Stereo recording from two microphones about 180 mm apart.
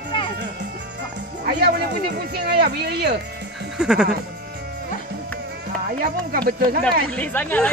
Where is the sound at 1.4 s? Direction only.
60° right (ahead or behind).